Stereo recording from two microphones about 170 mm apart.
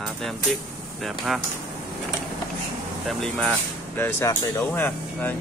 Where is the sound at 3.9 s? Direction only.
15° left (ahead or behind).